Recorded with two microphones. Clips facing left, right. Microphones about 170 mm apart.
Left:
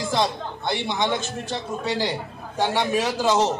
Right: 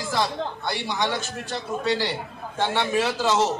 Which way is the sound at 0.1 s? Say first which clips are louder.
Even; 20° left (ahead or behind).